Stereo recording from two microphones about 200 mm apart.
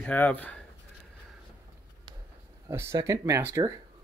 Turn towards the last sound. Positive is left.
turn(degrees=-15)  # may be behind; listen again after turning